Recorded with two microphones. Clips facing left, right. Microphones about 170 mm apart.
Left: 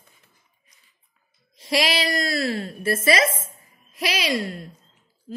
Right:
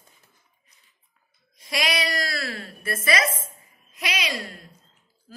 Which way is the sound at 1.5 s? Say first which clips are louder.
Left 5 dB; 30° left (ahead or behind).